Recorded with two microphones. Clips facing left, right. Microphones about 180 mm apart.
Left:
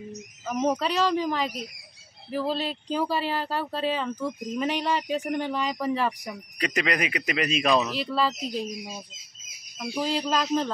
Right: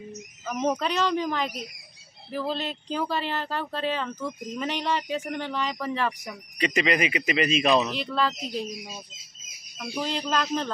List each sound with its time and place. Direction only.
0.5 s speech: 5° left (ahead or behind)